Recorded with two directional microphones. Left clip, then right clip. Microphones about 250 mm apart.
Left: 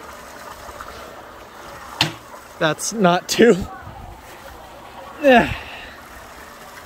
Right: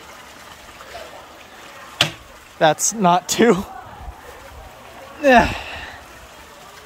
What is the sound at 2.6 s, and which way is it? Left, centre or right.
Speech, centre.